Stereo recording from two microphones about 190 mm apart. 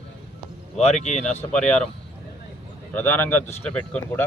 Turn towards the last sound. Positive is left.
turn(degrees=10)  # may be behind; listen again after turning